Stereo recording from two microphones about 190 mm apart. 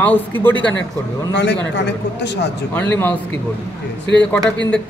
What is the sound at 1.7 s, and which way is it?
Speech, 65° left (ahead or behind).